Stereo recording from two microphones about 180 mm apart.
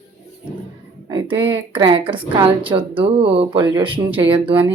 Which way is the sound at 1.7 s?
25° right (ahead or behind).